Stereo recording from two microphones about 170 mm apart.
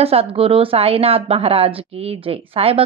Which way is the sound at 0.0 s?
35° right (ahead or behind).